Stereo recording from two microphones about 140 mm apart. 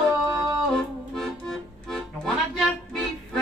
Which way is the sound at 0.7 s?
Centre (ahead or behind).